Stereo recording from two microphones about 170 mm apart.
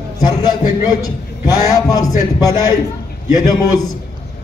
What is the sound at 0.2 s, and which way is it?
A man's voice, 25° left (ahead or behind).